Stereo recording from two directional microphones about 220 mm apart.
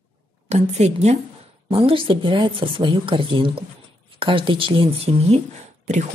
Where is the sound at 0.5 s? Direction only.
30° right (ahead or behind).